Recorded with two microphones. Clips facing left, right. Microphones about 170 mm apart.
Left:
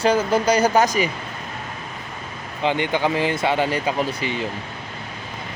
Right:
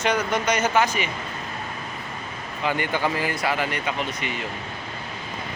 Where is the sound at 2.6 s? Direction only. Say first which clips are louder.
Left 4 dB; 20° left (ahead or behind).